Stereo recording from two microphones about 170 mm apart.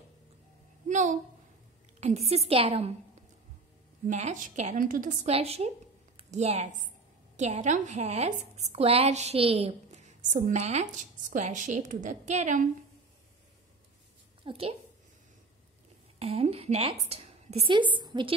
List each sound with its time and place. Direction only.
0.8 s a sound: 45° right (ahead or behind)
2.0 s a woman's voice: 40° right (ahead or behind)
4.1 s a woman's voice: 45° right (ahead or behind)
14.4 s speech: 35° right (ahead or behind)
16.2 s a woman's voice: 35° right (ahead or behind)